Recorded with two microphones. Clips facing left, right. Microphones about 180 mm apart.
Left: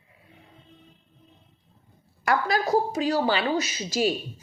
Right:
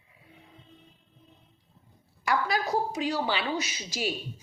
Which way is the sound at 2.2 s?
50° left (ahead or behind).